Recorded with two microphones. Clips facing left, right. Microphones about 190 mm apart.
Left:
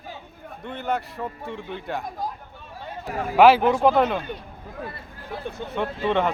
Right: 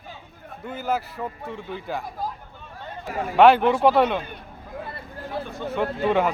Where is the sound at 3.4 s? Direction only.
5° left (ahead or behind).